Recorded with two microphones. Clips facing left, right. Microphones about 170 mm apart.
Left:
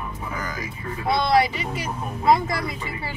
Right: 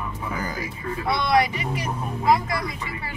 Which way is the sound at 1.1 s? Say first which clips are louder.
Left 2 dB; 30° left (ahead or behind).